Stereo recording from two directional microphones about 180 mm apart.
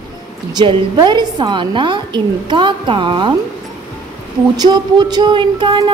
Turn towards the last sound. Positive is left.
turn(degrees=-25)  # may be behind; listen again after turning